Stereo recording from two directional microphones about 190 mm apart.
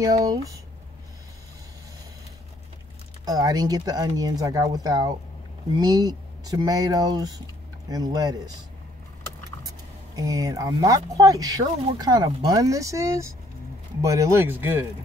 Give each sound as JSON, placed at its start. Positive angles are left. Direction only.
{"t": 0.0, "sound": "speech", "side_deg": -20}
{"t": 3.3, "sound": "speech", "side_deg": -20}
{"t": 9.7, "sound": "speech", "side_deg": -20}